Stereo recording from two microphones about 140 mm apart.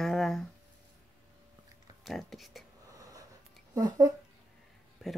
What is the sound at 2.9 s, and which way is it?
Snort, 25° right (ahead or behind).